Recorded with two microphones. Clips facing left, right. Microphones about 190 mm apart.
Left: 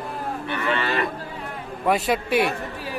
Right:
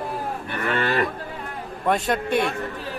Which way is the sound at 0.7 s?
45° right (ahead or behind).